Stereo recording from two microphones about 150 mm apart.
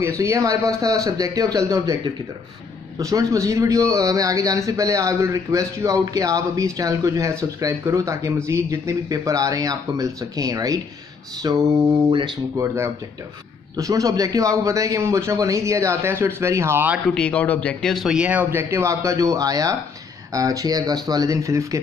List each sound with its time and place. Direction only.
0.0 s speech: 20° right (ahead or behind)
3.0 s speech: 20° right (ahead or behind)
17.1 s speech: 5° left (ahead or behind); by 21.7 s 20° right (ahead or behind)